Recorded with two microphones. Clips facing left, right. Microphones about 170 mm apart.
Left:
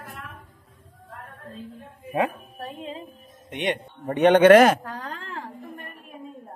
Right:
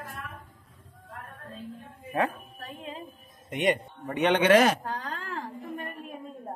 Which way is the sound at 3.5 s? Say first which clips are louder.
Right 1 dB; centre (ahead or behind).